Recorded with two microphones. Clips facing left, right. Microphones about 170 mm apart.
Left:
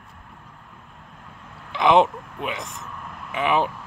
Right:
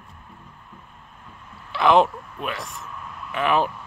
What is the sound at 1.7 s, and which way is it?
Vehicle, 20° left (ahead or behind).